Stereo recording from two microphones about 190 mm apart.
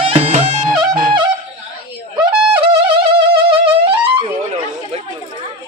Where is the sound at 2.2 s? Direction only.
25° right (ahead or behind).